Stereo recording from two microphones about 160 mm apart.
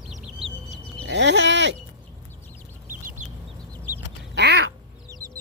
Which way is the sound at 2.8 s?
55° right (ahead or behind).